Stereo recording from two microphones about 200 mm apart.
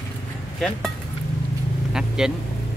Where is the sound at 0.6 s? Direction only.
5° left (ahead or behind).